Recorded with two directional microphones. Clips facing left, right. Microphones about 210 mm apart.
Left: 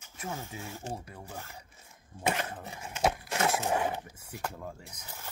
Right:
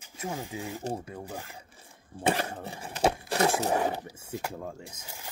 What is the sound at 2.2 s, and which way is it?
Speech, 30° right (ahead or behind).